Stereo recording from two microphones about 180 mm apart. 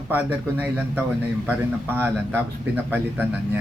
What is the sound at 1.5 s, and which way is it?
A man's voice, 10° right (ahead or behind).